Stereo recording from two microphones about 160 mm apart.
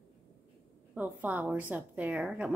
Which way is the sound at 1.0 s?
10° right (ahead or behind).